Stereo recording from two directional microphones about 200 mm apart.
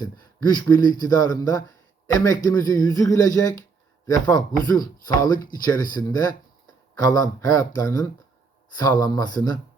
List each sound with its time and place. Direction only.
0.0 s speech: 20° left (ahead or behind)